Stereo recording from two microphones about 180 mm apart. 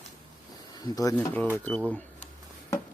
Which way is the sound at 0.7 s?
20° left (ahead or behind).